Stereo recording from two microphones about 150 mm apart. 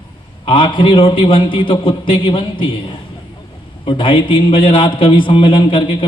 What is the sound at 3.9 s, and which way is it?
A man's voice, 35° left (ahead or behind).